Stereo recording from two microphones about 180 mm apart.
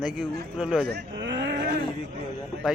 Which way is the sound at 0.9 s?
75° right (ahead or behind).